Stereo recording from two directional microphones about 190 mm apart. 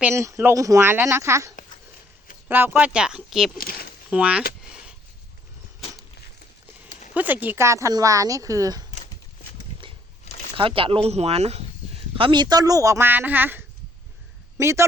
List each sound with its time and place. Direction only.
0.0 s speech: 15° right (ahead or behind)
3.6 s speech: 50° left (ahead or behind)
4.1 s speech: 5° right (ahead or behind)
7.1 s speech: 10° right (ahead or behind)
10.2 s a sound: 35° left (ahead or behind)
10.5 s speech: 30° right (ahead or behind)